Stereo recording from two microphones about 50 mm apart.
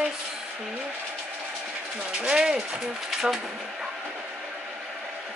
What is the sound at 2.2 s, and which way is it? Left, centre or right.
Speech, centre.